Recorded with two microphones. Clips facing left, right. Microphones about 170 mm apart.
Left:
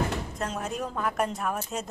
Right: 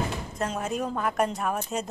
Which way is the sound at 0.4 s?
Centre (ahead or behind).